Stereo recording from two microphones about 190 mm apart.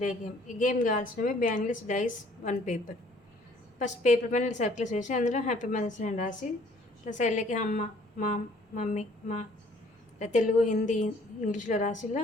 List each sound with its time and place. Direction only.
0.0 s a woman's voice: 40° left (ahead or behind)